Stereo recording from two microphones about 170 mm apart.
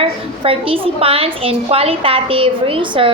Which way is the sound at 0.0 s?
35° right (ahead or behind).